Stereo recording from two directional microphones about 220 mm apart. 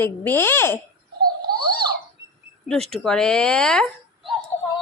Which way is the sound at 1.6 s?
20° right (ahead or behind).